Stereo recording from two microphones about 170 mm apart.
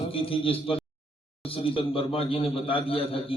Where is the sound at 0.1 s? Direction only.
30° left (ahead or behind).